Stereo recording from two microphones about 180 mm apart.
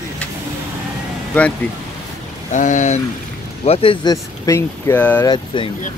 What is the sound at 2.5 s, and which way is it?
Speech, 45° left (ahead or behind).